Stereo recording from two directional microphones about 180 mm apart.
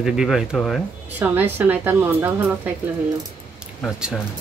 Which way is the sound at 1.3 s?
10° right (ahead or behind).